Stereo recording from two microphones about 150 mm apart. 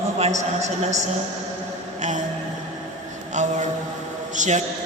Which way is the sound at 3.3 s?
55° right (ahead or behind).